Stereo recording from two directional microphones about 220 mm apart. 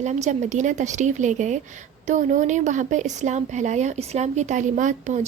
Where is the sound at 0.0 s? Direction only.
30° right (ahead or behind).